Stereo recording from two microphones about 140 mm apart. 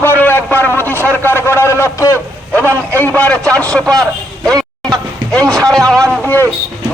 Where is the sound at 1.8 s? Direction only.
20° left (ahead or behind).